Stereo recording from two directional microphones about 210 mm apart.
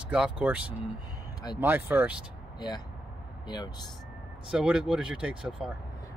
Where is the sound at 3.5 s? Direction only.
20° left (ahead or behind).